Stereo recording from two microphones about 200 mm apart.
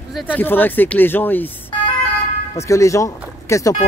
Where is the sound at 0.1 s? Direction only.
10° left (ahead or behind).